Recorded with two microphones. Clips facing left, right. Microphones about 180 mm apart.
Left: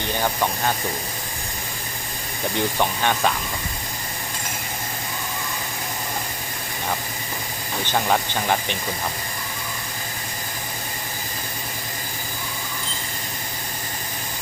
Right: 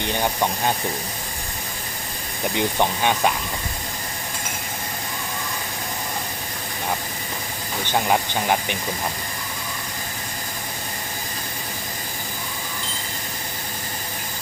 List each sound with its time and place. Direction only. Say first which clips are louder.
0.0 s speech: right 1 dB; 20° right (ahead or behind)
2.6 s speech: right 1 dB; 15° right (ahead or behind)
7.9 s speech: right 1 dB; 10° right (ahead or behind)